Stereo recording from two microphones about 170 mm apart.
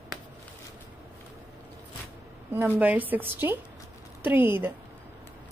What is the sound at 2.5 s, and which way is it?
A woman's voice, 10° right (ahead or behind).